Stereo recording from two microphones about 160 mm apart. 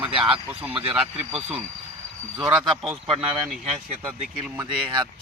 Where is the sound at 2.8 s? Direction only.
5° right (ahead or behind).